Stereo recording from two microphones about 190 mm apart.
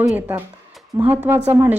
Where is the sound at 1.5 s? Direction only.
10° right (ahead or behind).